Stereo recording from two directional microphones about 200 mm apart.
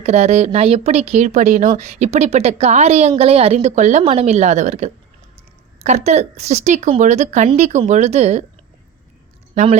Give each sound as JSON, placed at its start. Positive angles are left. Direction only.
{"t": 0.0, "sound": "a woman's voice", "side_deg": -35}